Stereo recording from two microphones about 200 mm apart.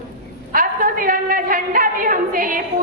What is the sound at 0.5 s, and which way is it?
A woman's voice, 45° right (ahead or behind).